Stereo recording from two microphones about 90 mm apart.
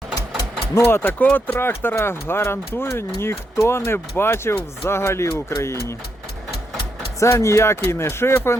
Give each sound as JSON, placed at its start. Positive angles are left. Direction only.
{"t": 0.7, "sound": "speech", "side_deg": 25}
{"t": 7.2, "sound": "speech", "side_deg": 30}